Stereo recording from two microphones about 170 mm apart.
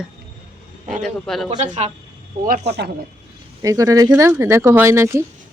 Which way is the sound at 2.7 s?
75° right (ahead or behind).